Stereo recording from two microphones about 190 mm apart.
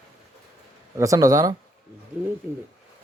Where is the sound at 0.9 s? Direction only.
15° right (ahead or behind).